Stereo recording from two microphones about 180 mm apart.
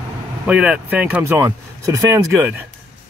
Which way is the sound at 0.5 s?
5° right (ahead or behind).